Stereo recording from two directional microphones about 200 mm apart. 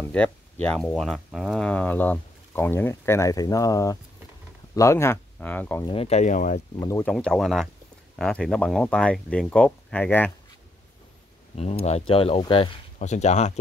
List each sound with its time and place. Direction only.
0.1 s speech: 5° left (ahead or behind)
5.9 s speech: 30° left (ahead or behind)
6.8 s speech: 15° left (ahead or behind)
7.1 s speech: 5° left (ahead or behind)
11.5 s speech: 30° left (ahead or behind)